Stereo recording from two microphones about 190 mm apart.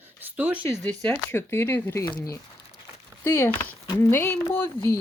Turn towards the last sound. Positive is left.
turn(degrees=10)  # may be behind; listen again after turning